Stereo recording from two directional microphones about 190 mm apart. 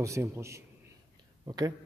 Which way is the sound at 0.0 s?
15° right (ahead or behind).